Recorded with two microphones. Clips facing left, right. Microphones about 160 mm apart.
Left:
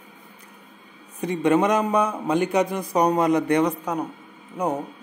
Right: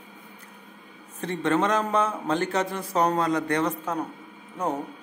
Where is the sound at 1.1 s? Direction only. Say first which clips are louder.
Left 5 dB; 15° left (ahead or behind).